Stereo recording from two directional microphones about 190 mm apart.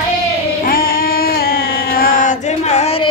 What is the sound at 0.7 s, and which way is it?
Female singing, 50° left (ahead or behind).